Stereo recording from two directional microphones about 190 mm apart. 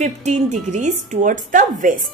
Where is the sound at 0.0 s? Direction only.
40° right (ahead or behind).